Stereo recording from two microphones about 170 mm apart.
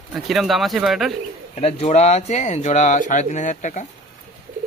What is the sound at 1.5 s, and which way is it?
Speech, 40° left (ahead or behind).